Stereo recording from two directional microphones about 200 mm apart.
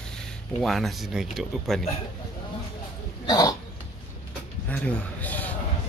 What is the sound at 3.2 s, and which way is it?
Speech, 20° left (ahead or behind).